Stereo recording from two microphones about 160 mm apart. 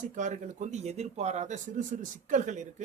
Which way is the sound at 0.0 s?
50° right (ahead or behind).